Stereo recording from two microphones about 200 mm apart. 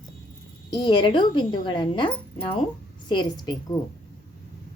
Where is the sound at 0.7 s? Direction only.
20° left (ahead or behind).